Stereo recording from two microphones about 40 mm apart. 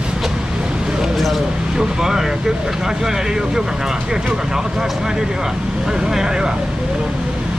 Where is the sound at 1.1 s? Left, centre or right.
Centre.